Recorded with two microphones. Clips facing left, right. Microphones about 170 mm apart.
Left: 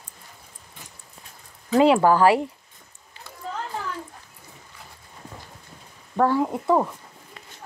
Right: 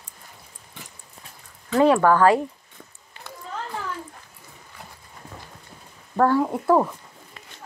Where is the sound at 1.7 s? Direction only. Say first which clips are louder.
Even; 20° left (ahead or behind).